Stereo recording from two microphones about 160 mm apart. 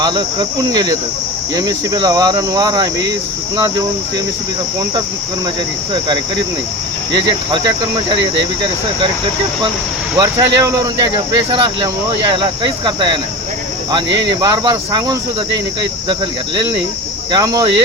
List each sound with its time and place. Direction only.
0.0 s cricket: 25° right (ahead or behind)
5.9 s cricket: 30° right (ahead or behind)
10.2 s cricket: 25° right (ahead or behind)
14.3 s cricket: 25° right (ahead or behind)
17.3 s cricket: 25° right (ahead or behind)